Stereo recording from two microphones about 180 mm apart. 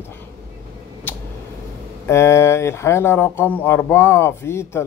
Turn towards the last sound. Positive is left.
turn(degrees=15)  # may be behind; listen again after turning